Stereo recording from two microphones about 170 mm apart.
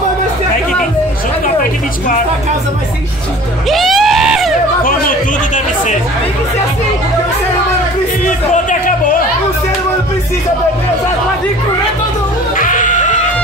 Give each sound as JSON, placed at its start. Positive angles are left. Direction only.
{"t": 3.6, "sound": "a sound", "side_deg": 0}
{"t": 8.5, "sound": "music", "side_deg": 50}
{"t": 12.5, "sound": "music", "side_deg": 50}